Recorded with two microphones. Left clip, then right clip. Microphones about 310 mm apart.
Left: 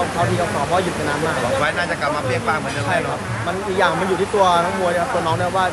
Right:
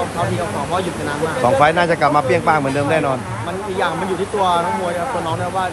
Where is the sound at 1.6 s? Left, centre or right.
Right.